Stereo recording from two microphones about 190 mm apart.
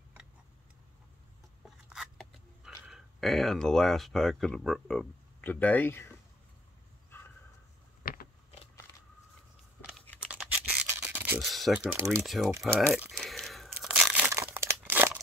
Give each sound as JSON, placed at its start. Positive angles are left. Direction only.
{"t": 1.9, "sound": "speech", "side_deg": 0}
{"t": 7.1, "sound": "dog", "side_deg": 10}
{"t": 8.0, "sound": "a sound", "side_deg": 50}
{"t": 9.8, "sound": "a sound", "side_deg": 0}
{"t": 10.2, "sound": "toothbrush", "side_deg": -5}
{"t": 10.9, "sound": "a sound", "side_deg": -10}
{"t": 12.2, "sound": "speech", "side_deg": 0}
{"t": 12.4, "sound": "speech", "side_deg": -15}
{"t": 12.9, "sound": "crumpling", "side_deg": 0}